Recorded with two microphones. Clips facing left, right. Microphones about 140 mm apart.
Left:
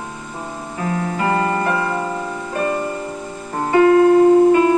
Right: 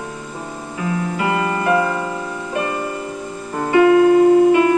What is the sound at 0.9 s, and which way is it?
Music, 40° left (ahead or behind).